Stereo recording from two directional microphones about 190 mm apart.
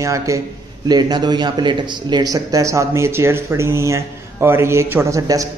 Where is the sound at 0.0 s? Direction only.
15° right (ahead or behind).